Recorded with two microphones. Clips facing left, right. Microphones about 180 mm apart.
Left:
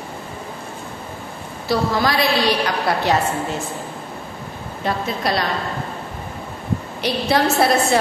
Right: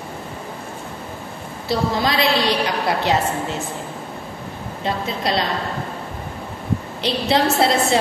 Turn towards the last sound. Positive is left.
turn(degrees=-25)  # may be behind; listen again after turning